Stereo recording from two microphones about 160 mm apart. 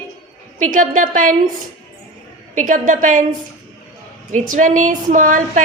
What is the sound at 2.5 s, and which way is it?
Speech, 50° right (ahead or behind).